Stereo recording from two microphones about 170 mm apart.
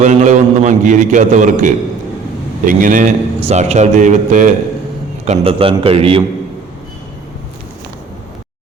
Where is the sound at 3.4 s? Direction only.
40° right (ahead or behind).